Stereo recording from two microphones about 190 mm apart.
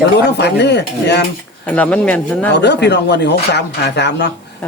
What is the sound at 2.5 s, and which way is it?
Speech, 65° left (ahead or behind).